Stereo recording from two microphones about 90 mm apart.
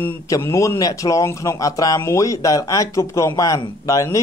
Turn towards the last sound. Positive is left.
turn(degrees=35)  # may be behind; listen again after turning